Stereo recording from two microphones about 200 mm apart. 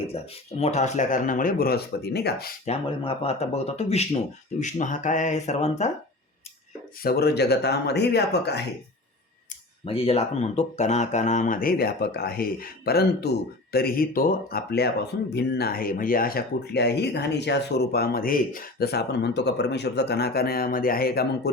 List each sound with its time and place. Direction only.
0.6 s speech: 35° left (ahead or behind); by 2.5 s 55° left (ahead or behind)
2.6 s speech: 30° left (ahead or behind)
7.0 s speech: 50° left (ahead or behind)
9.8 s speech: 30° left (ahead or behind); by 21.5 s 50° left (ahead or behind)